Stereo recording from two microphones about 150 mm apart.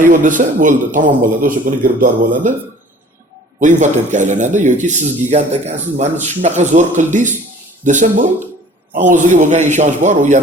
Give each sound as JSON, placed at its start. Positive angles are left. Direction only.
{"t": 0.0, "sound": "speech", "side_deg": -60}
{"t": 3.6, "sound": "speech", "side_deg": -55}